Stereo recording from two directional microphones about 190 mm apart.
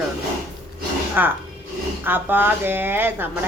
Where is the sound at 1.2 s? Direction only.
10° right (ahead or behind).